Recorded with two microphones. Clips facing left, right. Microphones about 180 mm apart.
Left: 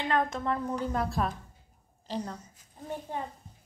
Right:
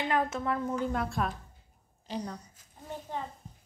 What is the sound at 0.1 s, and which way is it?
A woman's voice, 5° right (ahead or behind).